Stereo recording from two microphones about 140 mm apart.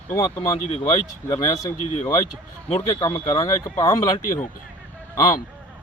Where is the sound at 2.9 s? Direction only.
30° left (ahead or behind).